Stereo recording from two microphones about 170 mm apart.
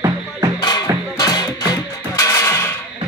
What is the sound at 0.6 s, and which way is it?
Music, 25° left (ahead or behind).